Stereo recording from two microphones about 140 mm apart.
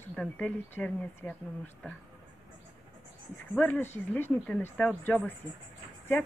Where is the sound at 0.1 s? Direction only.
5° left (ahead or behind).